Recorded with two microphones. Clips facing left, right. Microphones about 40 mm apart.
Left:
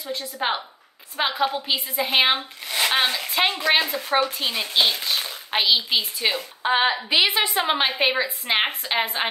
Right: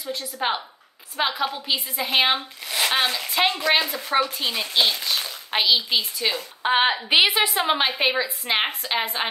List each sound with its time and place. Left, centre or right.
0.2 s a woman's voice: centre
6.6 s a woman's voice: centre
6.9 s a woman's voice: right
7.2 s speech: centre